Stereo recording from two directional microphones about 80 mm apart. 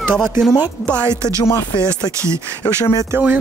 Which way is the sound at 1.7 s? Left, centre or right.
Left.